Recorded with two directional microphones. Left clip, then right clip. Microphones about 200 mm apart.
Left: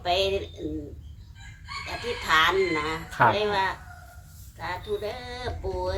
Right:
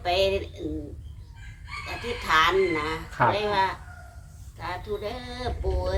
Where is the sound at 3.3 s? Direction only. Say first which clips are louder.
Right 1 dB; 5° right (ahead or behind).